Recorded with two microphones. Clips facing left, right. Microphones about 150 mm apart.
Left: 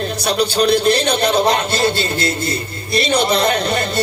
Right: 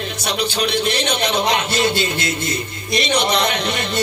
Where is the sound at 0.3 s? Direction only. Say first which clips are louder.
Left 6 dB; 35° left (ahead or behind).